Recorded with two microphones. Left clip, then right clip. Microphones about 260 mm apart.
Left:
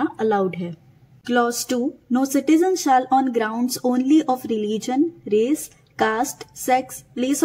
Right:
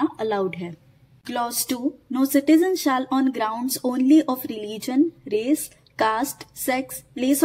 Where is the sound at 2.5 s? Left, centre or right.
Right.